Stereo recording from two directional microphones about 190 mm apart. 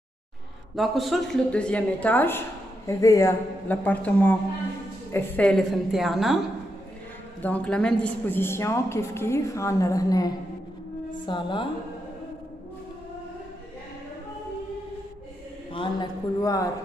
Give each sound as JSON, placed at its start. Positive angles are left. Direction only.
{"t": 0.7, "sound": "a woman's voice", "side_deg": 0}
{"t": 7.4, "sound": "a woman's voice", "side_deg": 5}
{"t": 15.7, "sound": "a man's voice", "side_deg": 25}